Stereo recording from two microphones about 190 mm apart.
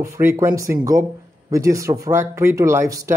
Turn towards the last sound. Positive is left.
turn(degrees=-15)  # may be behind; listen again after turning